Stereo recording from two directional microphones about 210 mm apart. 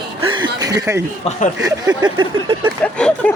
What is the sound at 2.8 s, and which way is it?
Speech, 5° left (ahead or behind).